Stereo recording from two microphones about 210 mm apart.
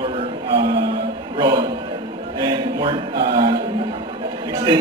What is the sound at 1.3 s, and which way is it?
Speech, 20° right (ahead or behind).